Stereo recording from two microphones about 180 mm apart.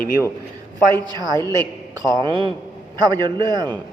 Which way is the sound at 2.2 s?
25° right (ahead or behind).